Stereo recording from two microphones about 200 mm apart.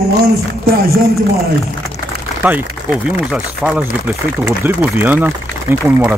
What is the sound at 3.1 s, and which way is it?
Speech, 5° right (ahead or behind).